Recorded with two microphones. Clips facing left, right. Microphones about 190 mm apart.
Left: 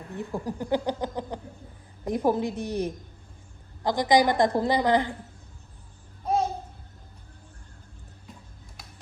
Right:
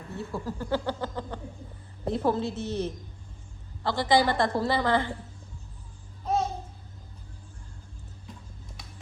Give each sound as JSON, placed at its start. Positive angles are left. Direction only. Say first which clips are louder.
{"t": 0.1, "sound": "a woman's voice", "louder": "left 2 dB", "side_deg": 15}